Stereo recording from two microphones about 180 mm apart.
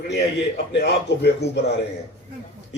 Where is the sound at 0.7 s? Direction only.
70° left (ahead or behind).